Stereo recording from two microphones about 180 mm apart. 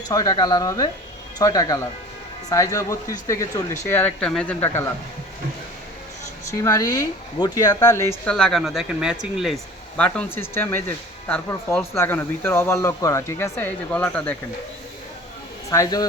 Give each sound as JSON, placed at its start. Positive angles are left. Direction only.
{"t": 0.1, "sound": "speech", "side_deg": 20}
{"t": 6.5, "sound": "speech", "side_deg": 15}
{"t": 8.2, "sound": "speech", "side_deg": 5}
{"t": 10.0, "sound": "speech", "side_deg": 10}
{"t": 15.7, "sound": "speech", "side_deg": 20}